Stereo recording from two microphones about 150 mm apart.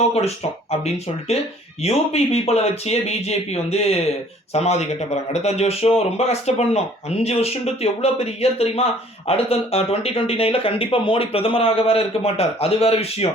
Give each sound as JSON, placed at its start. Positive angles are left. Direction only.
{"t": 0.1, "sound": "a man's voice", "side_deg": 45}